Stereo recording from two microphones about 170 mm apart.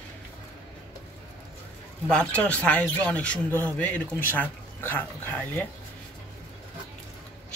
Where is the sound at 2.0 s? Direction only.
5° left (ahead or behind).